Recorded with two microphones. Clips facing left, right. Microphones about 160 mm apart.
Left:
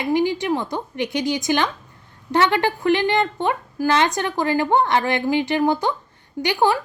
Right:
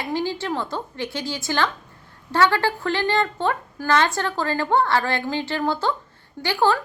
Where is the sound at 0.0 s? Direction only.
15° left (ahead or behind).